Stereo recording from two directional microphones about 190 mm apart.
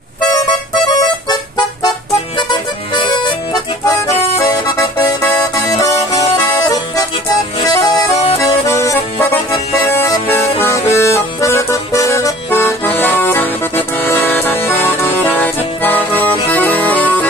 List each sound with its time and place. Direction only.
0.7 s music: 20° left (ahead or behind)
4.5 s music: 15° left (ahead or behind)
8.4 s accordion: 15° left (ahead or behind)